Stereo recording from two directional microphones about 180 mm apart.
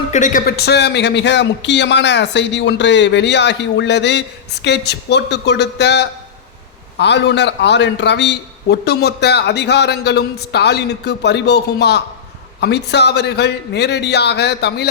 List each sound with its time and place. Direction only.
0.1 s a man's voice: 45° left (ahead or behind); by 14.8 s 65° left (ahead or behind)